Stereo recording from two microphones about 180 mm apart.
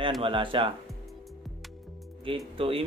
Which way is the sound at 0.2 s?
30° right (ahead or behind).